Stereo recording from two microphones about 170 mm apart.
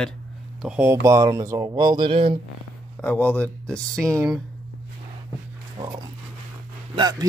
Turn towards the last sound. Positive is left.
turn(degrees=-20)  # may be behind; listen again after turning